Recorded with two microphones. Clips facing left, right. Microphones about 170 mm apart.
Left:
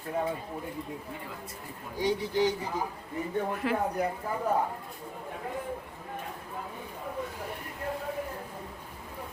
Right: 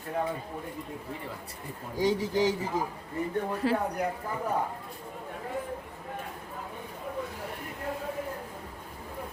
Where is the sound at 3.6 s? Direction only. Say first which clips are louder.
Right 4 dB; 30° right (ahead or behind).